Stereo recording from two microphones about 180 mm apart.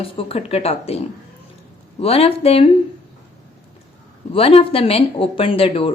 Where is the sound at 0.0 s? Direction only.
30° left (ahead or behind).